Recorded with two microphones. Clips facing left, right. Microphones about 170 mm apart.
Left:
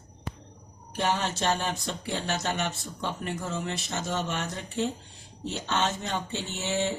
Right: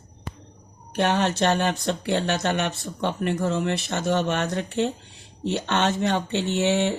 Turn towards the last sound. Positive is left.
turn(degrees=-65)  # may be behind; listen again after turning